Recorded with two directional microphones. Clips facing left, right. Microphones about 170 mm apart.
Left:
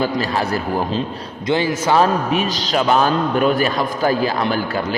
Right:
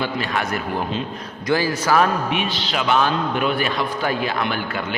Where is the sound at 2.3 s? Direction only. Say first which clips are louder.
Left 5 dB; 40° left (ahead or behind).